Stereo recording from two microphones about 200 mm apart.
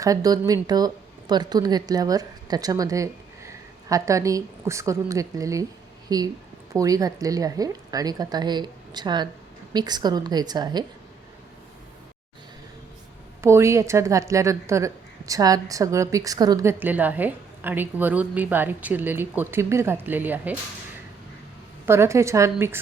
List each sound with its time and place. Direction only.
0.0 s a woman's voice: 15° right (ahead or behind)
13.4 s speech: 15° right (ahead or behind)
21.8 s speech: 15° right (ahead or behind)